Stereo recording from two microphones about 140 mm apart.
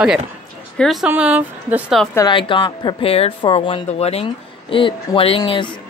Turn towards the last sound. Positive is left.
turn(degrees=35)  # may be behind; listen again after turning